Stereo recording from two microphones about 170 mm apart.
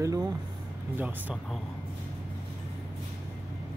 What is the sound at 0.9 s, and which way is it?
Speech, 10° right (ahead or behind).